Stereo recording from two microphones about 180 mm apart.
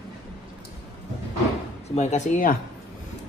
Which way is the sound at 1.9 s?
40° left (ahead or behind).